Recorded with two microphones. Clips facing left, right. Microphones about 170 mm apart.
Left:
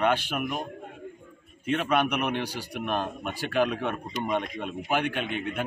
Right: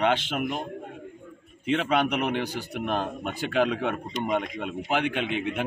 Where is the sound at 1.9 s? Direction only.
20° right (ahead or behind).